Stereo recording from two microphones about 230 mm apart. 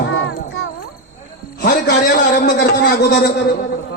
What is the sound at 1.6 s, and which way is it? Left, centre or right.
A man's voice, left.